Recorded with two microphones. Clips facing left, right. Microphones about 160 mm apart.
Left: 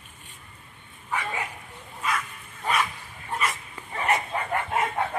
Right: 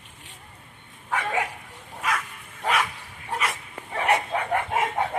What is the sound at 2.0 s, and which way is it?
Bow-wow, 90° right.